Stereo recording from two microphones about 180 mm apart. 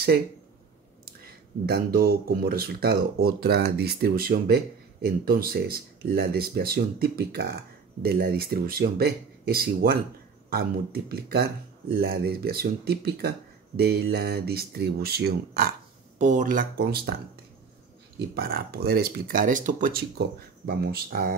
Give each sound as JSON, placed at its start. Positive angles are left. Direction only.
{"t": 1.7, "sound": "speech", "side_deg": -55}
{"t": 16.2, "sound": "speech", "side_deg": -45}
{"t": 18.3, "sound": "speech", "side_deg": -55}